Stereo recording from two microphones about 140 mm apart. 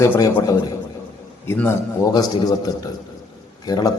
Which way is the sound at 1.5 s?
10° left (ahead or behind).